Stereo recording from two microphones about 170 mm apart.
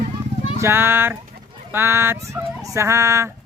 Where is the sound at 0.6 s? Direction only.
15° right (ahead or behind).